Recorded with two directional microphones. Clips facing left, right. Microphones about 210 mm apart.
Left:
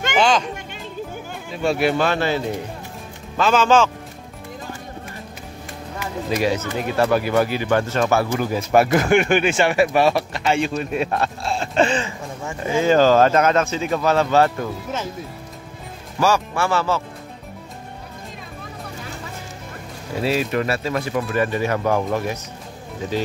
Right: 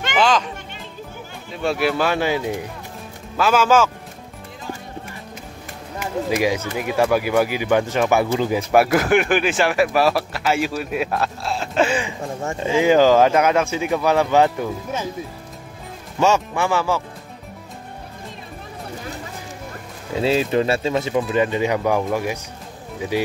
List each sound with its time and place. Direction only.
1.6 s speech: centre (ahead or behind)
6.3 s speech: 10° right (ahead or behind)
16.2 s speech: 25° right (ahead or behind)
20.2 s speech: 25° right (ahead or behind); by 22.4 s 10° right (ahead or behind)